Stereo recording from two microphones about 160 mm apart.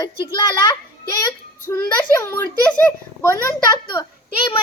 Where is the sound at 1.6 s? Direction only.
15° left (ahead or behind).